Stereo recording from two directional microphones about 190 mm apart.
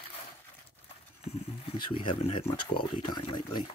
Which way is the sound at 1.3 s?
30° left (ahead or behind).